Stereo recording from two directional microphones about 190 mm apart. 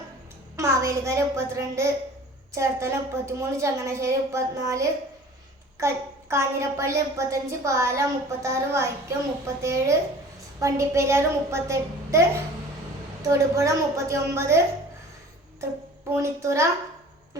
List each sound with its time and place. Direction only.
0.5 s a child's voice: 15° right (ahead or behind)
13.2 s a woman's voice: 15° right (ahead or behind)
16.1 s a woman's voice: 15° right (ahead or behind)